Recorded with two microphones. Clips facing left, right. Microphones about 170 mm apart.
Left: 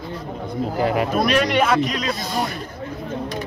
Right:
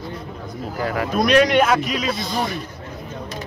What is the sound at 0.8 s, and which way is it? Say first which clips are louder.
Speech: left 3 dB; 20° left (ahead or behind).